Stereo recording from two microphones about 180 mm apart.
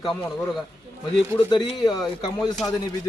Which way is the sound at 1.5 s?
25° left (ahead or behind).